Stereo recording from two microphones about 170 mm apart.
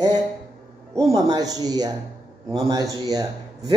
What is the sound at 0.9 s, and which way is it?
A man's voice, 20° right (ahead or behind).